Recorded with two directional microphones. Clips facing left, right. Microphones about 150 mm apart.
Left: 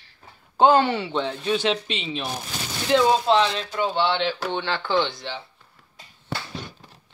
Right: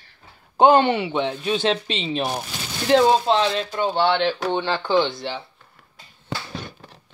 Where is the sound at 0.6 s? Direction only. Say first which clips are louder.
Right 2 dB; 20° right (ahead or behind).